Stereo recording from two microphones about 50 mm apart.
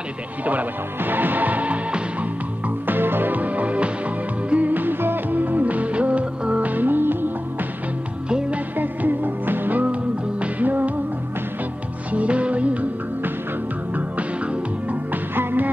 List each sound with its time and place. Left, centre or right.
0.5 s music: right
2.9 s music: right
8.3 s music: centre
8.7 s music: right
12.1 s music: right
13.9 s music: right